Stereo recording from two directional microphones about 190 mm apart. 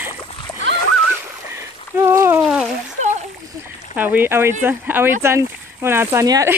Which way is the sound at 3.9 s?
10° right (ahead or behind).